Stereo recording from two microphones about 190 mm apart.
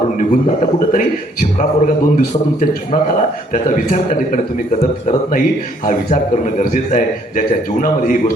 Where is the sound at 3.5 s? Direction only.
40° left (ahead or behind).